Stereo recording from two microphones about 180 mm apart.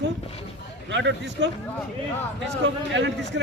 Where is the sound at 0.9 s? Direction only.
80° right.